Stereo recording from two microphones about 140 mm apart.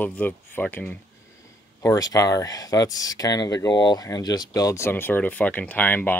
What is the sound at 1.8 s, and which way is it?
Speech, 25° left (ahead or behind).